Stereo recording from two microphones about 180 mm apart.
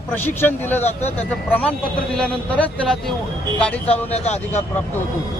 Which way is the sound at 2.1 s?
5° left (ahead or behind).